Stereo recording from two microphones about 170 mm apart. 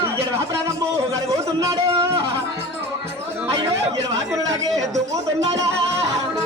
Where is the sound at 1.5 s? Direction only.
20° right (ahead or behind).